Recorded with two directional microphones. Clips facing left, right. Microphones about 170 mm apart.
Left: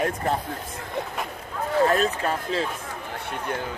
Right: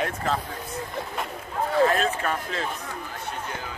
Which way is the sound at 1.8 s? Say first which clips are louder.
Left 1 dB; 35° left (ahead or behind).